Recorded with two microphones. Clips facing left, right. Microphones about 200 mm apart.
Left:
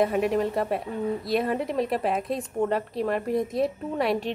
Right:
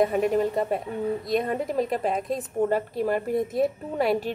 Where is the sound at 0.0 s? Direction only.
Centre (ahead or behind).